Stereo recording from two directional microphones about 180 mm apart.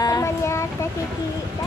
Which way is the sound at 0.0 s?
20° left (ahead or behind).